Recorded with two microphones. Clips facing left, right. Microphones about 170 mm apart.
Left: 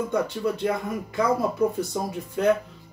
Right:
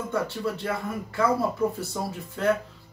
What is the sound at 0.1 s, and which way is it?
Speech, 15° left (ahead or behind).